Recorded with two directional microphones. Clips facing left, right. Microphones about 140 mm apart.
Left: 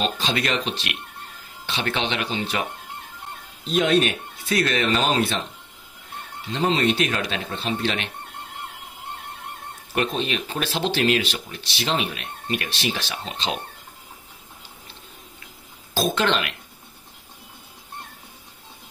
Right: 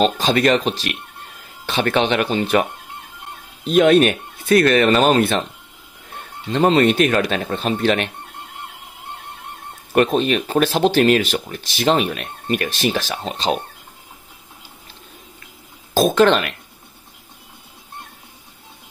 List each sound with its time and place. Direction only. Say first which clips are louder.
0.0 s speech: right 9 dB; 45° right (ahead or behind)
3.6 s speech: right 7 dB; 55° right (ahead or behind)
6.5 s speech: right 7 dB; 55° right (ahead or behind)
9.9 s speech: right 8 dB; 50° right (ahead or behind)
15.9 s speech: right 8 dB; 45° right (ahead or behind)